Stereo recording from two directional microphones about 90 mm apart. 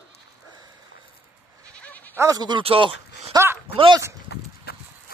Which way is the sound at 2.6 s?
90° right.